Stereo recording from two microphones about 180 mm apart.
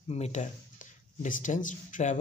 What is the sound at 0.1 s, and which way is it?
Speech, 40° left (ahead or behind).